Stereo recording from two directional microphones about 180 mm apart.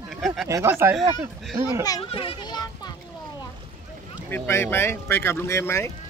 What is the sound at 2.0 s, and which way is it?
Speech, 30° left (ahead or behind).